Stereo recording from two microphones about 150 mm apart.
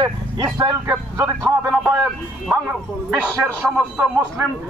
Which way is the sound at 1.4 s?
5° right (ahead or behind).